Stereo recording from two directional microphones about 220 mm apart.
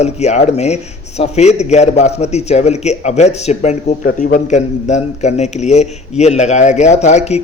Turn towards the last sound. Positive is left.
turn(degrees=30)  # may be behind; listen again after turning